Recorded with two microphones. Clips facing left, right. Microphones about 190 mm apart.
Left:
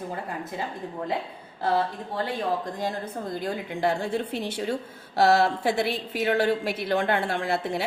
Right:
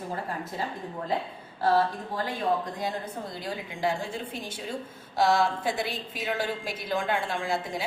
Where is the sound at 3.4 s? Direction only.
60° left (ahead or behind).